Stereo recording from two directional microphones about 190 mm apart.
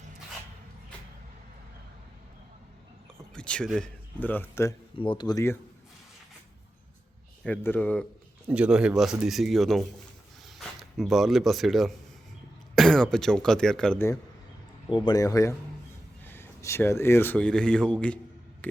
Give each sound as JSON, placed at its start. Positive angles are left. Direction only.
{"t": 3.3, "sound": "speech", "side_deg": 5}
{"t": 4.9, "sound": "speech", "side_deg": 25}
{"t": 7.4, "sound": "speech", "side_deg": 10}
{"t": 8.4, "sound": "speech", "side_deg": -5}
{"t": 14.8, "sound": "speech", "side_deg": 25}
{"t": 18.6, "sound": "a sound", "side_deg": 5}